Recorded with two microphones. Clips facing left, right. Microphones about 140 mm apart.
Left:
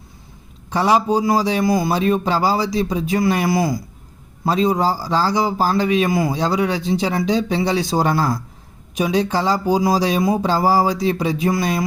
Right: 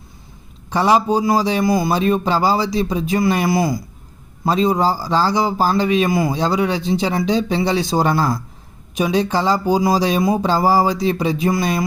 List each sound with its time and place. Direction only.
0.7 s a man's voice: 25° right (ahead or behind)